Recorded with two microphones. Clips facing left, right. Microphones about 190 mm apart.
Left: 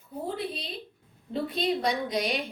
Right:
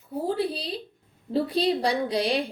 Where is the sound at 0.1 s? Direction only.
35° right (ahead or behind).